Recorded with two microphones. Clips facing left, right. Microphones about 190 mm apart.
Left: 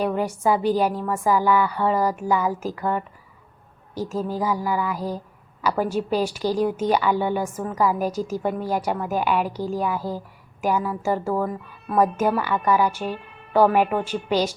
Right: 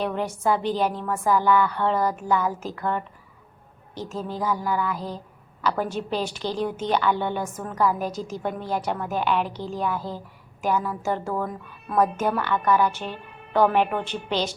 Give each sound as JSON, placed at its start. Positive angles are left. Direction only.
{"t": 0.0, "sound": "a woman's voice", "side_deg": 10}